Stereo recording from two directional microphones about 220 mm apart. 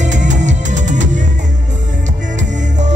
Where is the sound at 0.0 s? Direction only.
35° right (ahead or behind).